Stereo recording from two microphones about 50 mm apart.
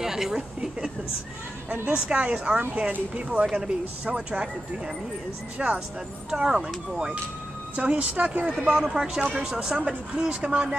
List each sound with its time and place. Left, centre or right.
0.0 s a sound: centre
2.0 s speech: right
7.7 s speech: right
8.7 s speech: centre